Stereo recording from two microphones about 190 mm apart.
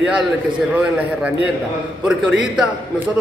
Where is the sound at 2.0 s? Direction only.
5° right (ahead or behind).